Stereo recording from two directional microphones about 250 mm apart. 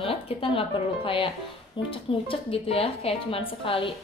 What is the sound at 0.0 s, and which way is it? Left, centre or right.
A woman's voice, left.